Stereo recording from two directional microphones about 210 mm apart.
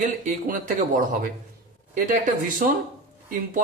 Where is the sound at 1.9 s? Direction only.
40° right (ahead or behind).